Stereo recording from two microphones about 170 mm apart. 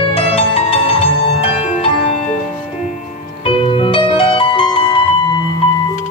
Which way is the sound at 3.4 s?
30° left (ahead or behind).